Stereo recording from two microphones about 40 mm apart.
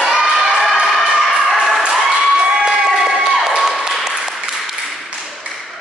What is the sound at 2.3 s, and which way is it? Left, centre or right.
Applause, centre.